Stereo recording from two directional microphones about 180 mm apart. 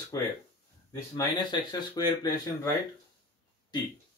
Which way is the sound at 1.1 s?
25° left (ahead or behind).